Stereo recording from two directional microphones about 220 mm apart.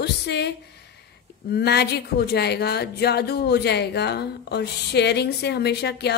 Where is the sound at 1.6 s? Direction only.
50° left (ahead or behind).